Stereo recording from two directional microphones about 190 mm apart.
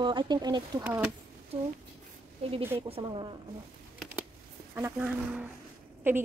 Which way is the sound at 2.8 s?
25° right (ahead or behind).